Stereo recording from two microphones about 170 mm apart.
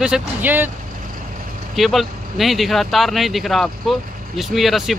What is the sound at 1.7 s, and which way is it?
Speech, centre (ahead or behind).